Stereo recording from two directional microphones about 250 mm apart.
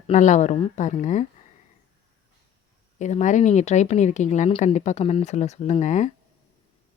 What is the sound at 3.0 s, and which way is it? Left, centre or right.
A woman's voice, left.